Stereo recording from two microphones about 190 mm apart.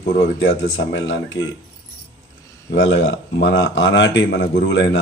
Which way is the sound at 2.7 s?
65° left (ahead or behind).